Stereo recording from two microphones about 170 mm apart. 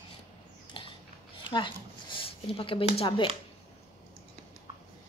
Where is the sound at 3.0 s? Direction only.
30° left (ahead or behind).